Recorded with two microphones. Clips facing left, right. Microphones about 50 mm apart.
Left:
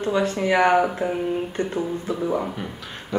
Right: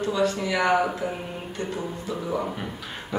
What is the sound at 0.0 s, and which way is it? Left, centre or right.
Speech, left.